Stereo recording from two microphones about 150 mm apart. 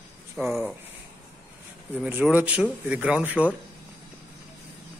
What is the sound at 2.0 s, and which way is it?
Speech, 10° right (ahead or behind).